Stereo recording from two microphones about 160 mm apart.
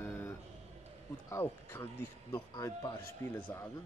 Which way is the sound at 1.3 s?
15° left (ahead or behind).